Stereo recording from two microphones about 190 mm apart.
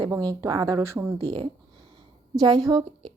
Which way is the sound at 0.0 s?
20° right (ahead or behind).